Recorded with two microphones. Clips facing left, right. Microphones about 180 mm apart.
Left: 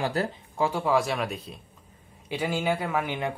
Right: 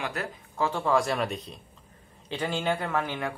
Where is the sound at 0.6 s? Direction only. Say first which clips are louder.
Left 1 dB; 10° left (ahead or behind).